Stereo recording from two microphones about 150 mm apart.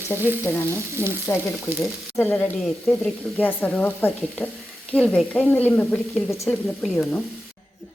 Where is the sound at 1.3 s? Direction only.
20° left (ahead or behind).